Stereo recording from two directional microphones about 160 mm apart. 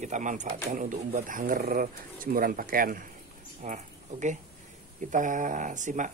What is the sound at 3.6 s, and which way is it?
Speech, 50° right (ahead or behind).